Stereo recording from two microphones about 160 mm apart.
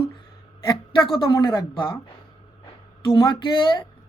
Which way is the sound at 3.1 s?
30° left (ahead or behind).